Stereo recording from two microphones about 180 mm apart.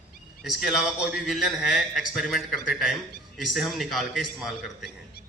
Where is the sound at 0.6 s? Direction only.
Centre (ahead or behind).